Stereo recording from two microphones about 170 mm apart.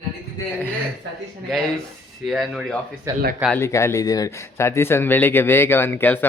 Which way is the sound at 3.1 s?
20° right (ahead or behind).